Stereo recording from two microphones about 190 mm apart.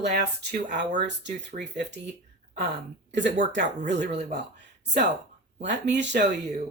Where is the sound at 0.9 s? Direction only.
40° right (ahead or behind).